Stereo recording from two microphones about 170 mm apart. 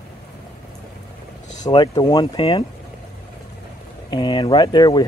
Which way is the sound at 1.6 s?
25° left (ahead or behind).